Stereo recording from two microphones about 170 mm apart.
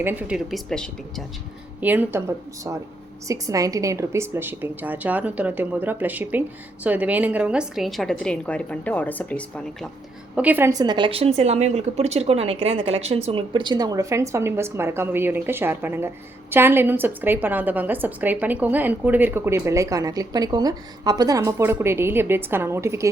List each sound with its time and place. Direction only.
0.0 s a woman's voice: 10° right (ahead or behind)
1.8 s a woman's voice: 10° right (ahead or behind); by 9.4 s 10° left (ahead or behind)
10.3 s a woman's voice: 10° right (ahead or behind)
10.7 s a woman's voice: 25° right (ahead or behind)